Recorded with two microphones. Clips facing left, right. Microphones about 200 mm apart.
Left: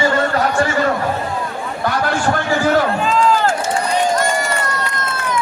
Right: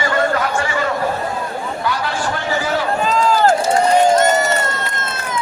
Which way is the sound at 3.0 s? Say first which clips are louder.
Right 1 dB; 40° right (ahead or behind).